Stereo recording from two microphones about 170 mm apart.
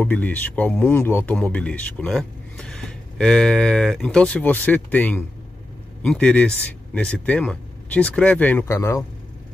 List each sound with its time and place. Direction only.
0.0 s speech: 10° left (ahead or behind)